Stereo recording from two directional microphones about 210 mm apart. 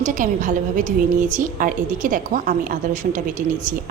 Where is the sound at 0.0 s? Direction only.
40° right (ahead or behind).